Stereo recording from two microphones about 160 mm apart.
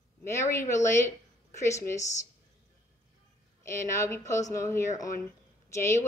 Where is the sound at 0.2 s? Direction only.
15° left (ahead or behind).